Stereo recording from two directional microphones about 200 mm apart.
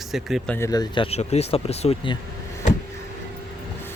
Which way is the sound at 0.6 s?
20° left (ahead or behind).